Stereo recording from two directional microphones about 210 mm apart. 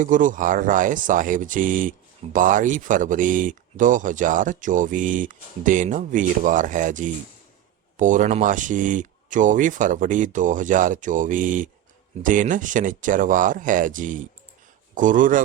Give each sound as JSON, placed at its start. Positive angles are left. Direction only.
{"t": 0.0, "sound": "speech", "side_deg": -40}